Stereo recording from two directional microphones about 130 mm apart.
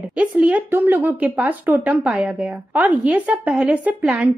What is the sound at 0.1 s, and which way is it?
A woman's voice, 10° right (ahead or behind).